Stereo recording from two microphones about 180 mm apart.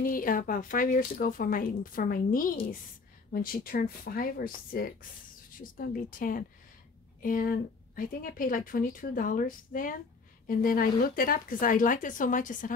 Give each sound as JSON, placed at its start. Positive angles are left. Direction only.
{"t": 0.0, "sound": "a woman's voice", "side_deg": 50}